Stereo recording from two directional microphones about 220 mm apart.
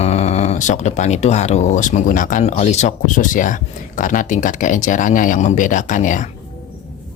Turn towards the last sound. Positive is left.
turn(degrees=35)  # may be behind; listen again after turning